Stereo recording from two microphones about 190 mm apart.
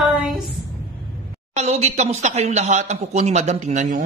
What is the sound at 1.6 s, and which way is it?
Speech, 35° right (ahead or behind).